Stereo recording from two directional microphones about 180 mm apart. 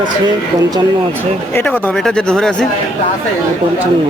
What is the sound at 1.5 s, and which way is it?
Speech, 10° left (ahead or behind).